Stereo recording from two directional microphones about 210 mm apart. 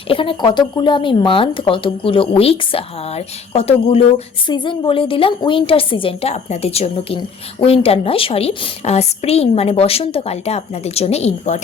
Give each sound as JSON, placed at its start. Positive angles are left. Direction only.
{"t": 0.1, "sound": "a woman's voice", "side_deg": 25}